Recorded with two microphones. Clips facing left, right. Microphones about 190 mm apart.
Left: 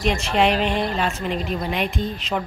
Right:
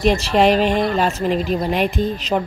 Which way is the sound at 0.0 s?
40° right (ahead or behind).